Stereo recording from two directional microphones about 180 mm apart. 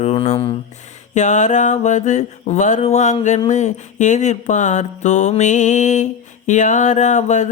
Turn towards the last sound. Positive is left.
turn(degrees=40)  # may be behind; listen again after turning